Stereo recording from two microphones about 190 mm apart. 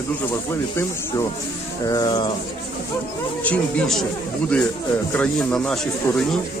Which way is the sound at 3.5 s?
5° left (ahead or behind).